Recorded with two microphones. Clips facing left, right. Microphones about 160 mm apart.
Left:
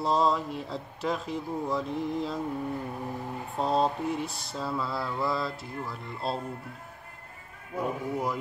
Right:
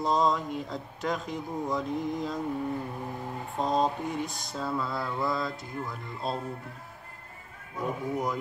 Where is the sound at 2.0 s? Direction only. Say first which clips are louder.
Left 1 dB; 30° left (ahead or behind).